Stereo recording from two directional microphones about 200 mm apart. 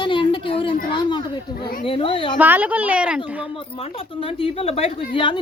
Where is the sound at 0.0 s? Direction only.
25° left (ahead or behind).